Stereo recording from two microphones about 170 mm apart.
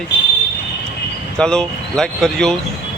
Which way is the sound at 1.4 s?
5° left (ahead or behind).